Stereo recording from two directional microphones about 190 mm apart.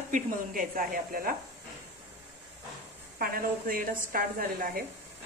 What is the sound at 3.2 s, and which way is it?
A woman's voice, 50° right (ahead or behind).